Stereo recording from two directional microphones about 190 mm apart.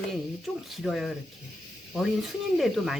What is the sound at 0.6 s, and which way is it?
Speech, centre (ahead or behind).